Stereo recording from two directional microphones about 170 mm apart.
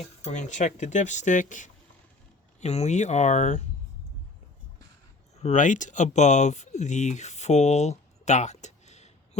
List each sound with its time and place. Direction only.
0.3 s speech: 45° left (ahead or behind)
5.4 s speech: 45° left (ahead or behind)